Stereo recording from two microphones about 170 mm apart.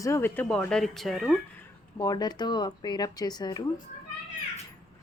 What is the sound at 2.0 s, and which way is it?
Speech, 25° left (ahead or behind).